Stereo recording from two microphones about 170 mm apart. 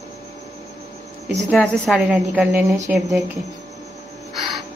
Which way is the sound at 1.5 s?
Centre (ahead or behind).